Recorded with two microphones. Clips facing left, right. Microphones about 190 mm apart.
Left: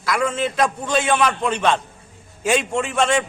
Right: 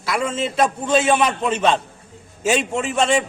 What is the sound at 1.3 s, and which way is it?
A man's voice, centre (ahead or behind).